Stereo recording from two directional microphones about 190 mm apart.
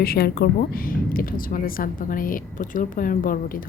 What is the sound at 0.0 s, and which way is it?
Speech, 55° left (ahead or behind).